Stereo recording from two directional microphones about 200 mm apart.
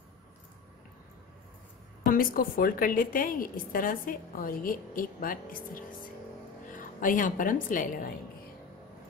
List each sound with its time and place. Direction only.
2.0 s a woman's voice: 45° left (ahead or behind)